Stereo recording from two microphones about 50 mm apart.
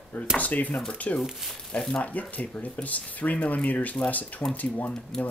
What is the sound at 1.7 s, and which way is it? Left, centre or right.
Speech, centre.